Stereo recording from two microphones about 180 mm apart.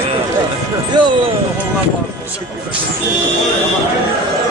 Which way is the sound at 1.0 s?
25° right (ahead or behind).